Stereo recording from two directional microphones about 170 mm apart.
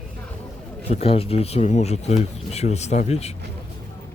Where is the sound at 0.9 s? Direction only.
35° left (ahead or behind).